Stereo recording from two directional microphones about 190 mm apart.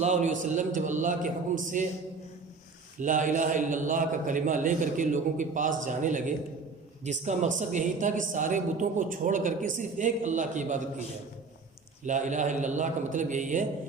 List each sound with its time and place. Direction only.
0.0 s speech: 40° right (ahead or behind)
3.0 s a man's voice: 40° right (ahead or behind)
12.0 s speech: 40° right (ahead or behind)